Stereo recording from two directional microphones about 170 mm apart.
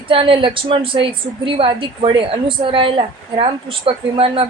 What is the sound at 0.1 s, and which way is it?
A woman's voice, 30° right (ahead or behind).